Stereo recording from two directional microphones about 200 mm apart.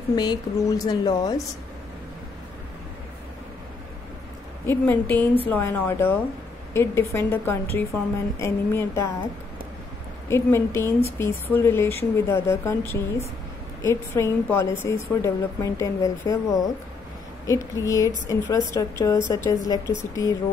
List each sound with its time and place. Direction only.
0.1 s speech: 20° left (ahead or behind)
4.6 s a woman's voice: 10° left (ahead or behind)
10.3 s a woman's voice: 15° left (ahead or behind)
17.5 s a woman's voice: 15° left (ahead or behind)